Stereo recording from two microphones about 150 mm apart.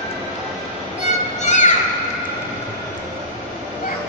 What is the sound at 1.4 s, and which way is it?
Music, 50° left (ahead or behind).